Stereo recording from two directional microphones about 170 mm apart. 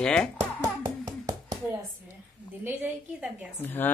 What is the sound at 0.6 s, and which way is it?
Hands, 20° right (ahead or behind).